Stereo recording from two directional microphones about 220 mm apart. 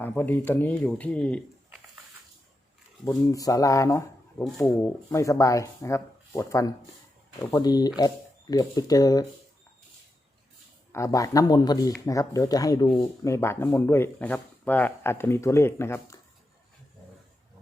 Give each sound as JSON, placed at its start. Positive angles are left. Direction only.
{"t": 0.0, "sound": "speech", "side_deg": 10}
{"t": 3.0, "sound": "speech", "side_deg": 15}
{"t": 10.9, "sound": "speech", "side_deg": 15}